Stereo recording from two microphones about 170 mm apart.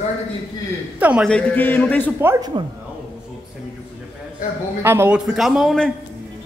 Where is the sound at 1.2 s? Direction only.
10° left (ahead or behind).